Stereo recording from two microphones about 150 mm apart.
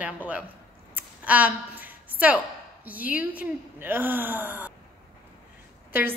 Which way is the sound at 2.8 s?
10° right (ahead or behind).